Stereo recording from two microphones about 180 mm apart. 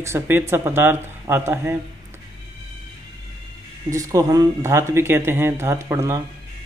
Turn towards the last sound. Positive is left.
turn(degrees=-15)  # may be behind; listen again after turning